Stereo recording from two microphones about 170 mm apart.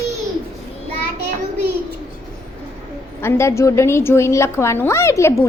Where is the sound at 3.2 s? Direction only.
15° left (ahead or behind).